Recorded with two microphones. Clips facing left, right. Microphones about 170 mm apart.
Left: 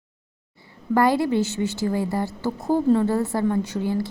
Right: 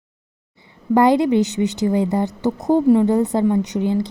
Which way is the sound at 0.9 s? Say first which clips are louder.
Right 5 dB; 20° right (ahead or behind).